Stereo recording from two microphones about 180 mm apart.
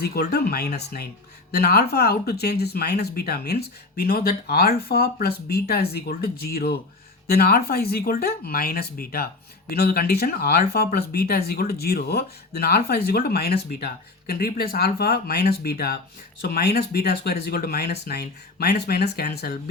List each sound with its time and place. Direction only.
0.0 s speech: 60° left (ahead or behind)